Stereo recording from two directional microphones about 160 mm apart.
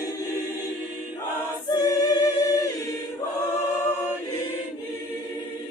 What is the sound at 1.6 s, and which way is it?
Choir, 25° left (ahead or behind).